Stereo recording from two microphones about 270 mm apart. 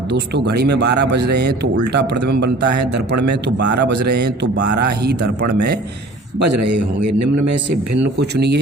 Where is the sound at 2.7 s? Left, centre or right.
Right.